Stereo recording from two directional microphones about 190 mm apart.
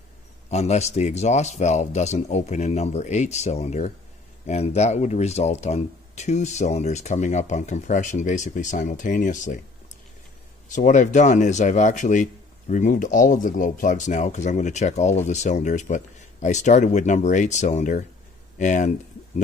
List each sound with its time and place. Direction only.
0.5 s speech: 35° left (ahead or behind)
10.7 s speech: 40° left (ahead or behind)